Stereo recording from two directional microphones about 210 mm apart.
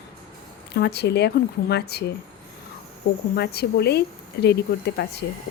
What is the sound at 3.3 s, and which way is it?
Speech, 50° left (ahead or behind).